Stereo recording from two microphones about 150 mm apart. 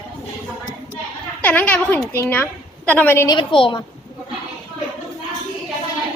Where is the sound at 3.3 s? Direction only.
35° left (ahead or behind).